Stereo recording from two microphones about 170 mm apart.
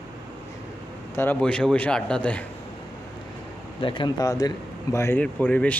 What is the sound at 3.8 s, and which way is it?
A man's voice, 30° left (ahead or behind).